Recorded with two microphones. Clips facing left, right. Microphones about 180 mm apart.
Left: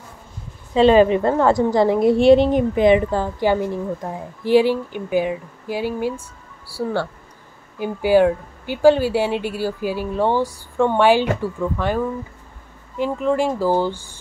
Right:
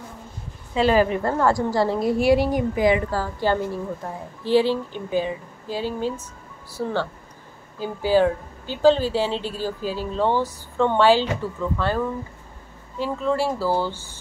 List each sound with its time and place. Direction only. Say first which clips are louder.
0.7 s a woman's voice: left 6 dB; 25° left (ahead or behind)